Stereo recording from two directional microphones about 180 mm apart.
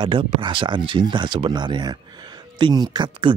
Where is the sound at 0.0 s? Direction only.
25° right (ahead or behind).